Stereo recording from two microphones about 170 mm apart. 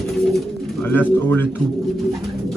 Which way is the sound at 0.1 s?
Centre (ahead or behind).